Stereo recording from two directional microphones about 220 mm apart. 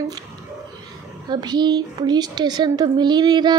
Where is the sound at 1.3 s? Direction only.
20° right (ahead or behind).